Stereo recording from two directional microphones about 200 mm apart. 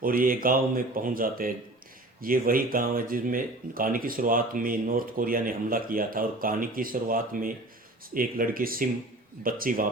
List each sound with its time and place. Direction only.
0.0 s speech: 45° right (ahead or behind)